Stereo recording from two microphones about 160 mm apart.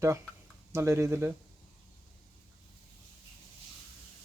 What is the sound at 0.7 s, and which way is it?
Speech, 15° right (ahead or behind).